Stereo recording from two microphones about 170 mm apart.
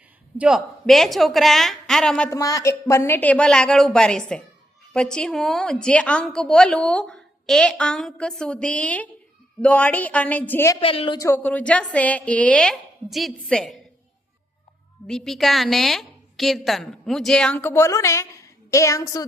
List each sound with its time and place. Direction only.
0.3 s a woman's voice: 5° right (ahead or behind)
2.3 s a woman's voice: 20° left (ahead or behind)
10.8 s speech: 35° left (ahead or behind)
11.2 s a woman's voice: 10° left (ahead or behind)
15.0 s a woman's voice: 5° left (ahead or behind); by 19.2 s 20° left (ahead or behind)